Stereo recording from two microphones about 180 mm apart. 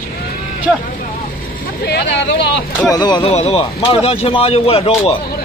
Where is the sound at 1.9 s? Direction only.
70° left (ahead or behind).